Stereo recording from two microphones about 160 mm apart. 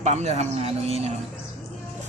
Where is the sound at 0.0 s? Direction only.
45° right (ahead or behind).